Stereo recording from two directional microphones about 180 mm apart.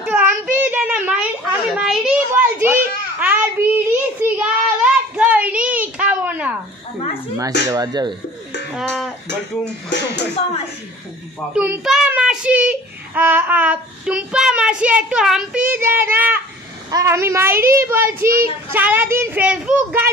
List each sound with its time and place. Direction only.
0.0 s child singing: 10° right (ahead or behind)
1.7 s a sound: 5° right (ahead or behind)
7.7 s speech: 20° right (ahead or behind)
8.7 s speech: centre (ahead or behind)
9.8 s speech: 70° left (ahead or behind)
11.5 s child singing: 5° right (ahead or behind)
18.2 s speech: 55° right (ahead or behind)
18.7 s child singing: 10° right (ahead or behind)